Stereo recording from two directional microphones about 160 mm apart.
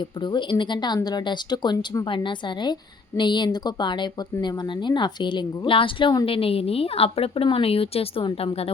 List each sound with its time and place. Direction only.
0.2 s speech: 30° left (ahead or behind)